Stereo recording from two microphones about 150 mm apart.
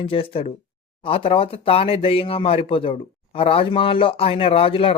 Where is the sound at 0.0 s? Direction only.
40° left (ahead or behind).